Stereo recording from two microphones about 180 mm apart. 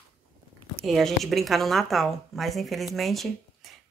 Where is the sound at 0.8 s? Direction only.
Centre (ahead or behind).